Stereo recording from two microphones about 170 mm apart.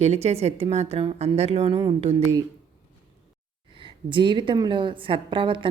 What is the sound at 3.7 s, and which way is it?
A woman's voice, 30° right (ahead or behind).